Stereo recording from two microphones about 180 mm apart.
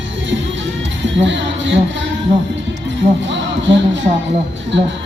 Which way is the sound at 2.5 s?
90° right.